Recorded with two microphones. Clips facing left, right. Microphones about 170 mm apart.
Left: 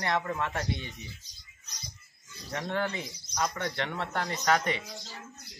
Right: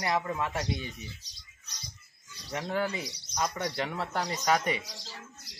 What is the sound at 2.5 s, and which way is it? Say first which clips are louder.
Speech: right 1 dB; 5° right (ahead or behind).